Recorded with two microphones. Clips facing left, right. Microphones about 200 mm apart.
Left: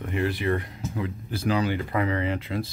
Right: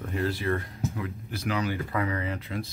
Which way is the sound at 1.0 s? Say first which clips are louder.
Left 4 dB; 30° left (ahead or behind).